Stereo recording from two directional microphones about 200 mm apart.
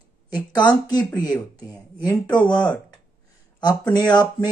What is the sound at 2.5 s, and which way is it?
Speech, 20° left (ahead or behind).